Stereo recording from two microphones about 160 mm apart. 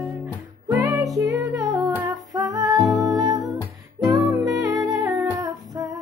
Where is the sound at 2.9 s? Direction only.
Centre (ahead or behind).